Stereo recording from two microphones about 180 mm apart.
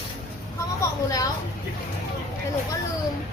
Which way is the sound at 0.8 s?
20° left (ahead or behind).